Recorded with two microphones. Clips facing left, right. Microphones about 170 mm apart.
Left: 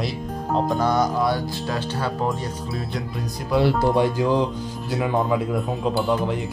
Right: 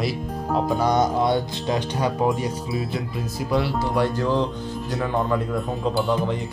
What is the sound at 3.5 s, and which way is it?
Speech, centre (ahead or behind).